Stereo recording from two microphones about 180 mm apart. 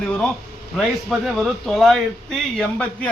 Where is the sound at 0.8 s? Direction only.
Centre (ahead or behind).